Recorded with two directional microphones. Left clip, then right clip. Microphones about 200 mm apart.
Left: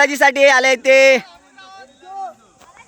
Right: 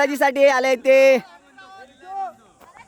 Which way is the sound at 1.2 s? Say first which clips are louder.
Left 3 dB; 55° right (ahead or behind).